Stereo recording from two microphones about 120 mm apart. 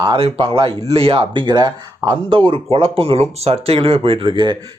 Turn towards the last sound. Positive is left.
turn(degrees=-45)  # may be behind; listen again after turning